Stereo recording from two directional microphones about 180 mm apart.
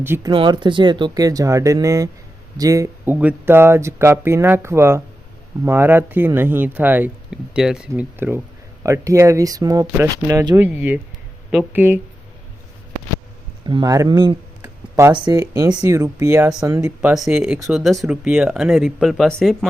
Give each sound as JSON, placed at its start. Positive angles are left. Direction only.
{"t": 0.0, "sound": "speech", "side_deg": -10}
{"t": 0.3, "sound": "speech", "side_deg": -25}
{"t": 13.7, "sound": "speech", "side_deg": -25}
{"t": 17.2, "sound": "speech", "side_deg": -5}